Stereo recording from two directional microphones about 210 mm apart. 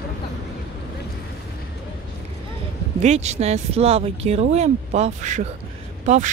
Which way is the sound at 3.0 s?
30° right (ahead or behind).